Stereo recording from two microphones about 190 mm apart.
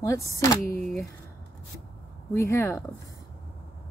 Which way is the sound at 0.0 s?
15° left (ahead or behind).